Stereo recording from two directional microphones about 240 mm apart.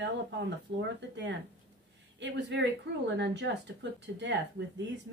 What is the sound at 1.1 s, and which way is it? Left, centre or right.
Speech, right.